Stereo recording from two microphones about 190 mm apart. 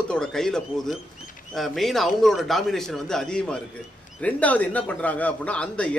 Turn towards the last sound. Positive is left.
turn(degrees=5)  # may be behind; listen again after turning